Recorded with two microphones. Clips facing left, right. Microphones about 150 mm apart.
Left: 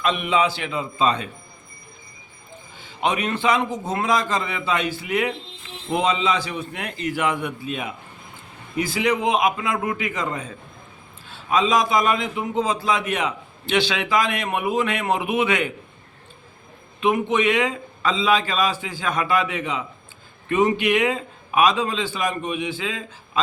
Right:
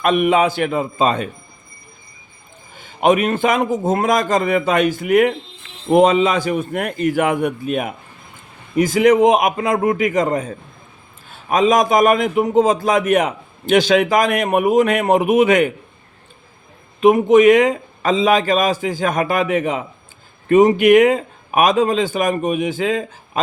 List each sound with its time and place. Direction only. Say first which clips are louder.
0.0 s a man's voice: right 6 dB; 50° right (ahead or behind)
2.7 s a man's voice: right 9 dB; 50° right (ahead or behind)
17.0 s a man's voice: right 10 dB; 40° right (ahead or behind)